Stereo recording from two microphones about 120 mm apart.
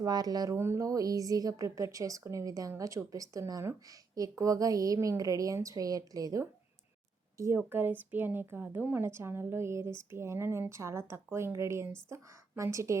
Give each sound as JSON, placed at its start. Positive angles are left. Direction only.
{"t": 0.0, "sound": "speech", "side_deg": -35}
{"t": 0.5, "sound": "a woman's voice", "side_deg": -20}